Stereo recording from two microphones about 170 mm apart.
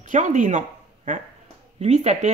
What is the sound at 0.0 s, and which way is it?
Speech, 45° right (ahead or behind).